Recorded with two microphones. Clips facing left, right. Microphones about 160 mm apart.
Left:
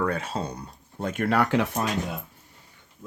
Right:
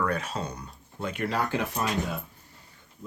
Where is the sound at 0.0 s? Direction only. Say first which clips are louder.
Left 2 dB; 30° left (ahead or behind).